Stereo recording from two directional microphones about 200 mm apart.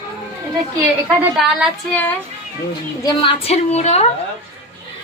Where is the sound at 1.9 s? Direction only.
10° left (ahead or behind).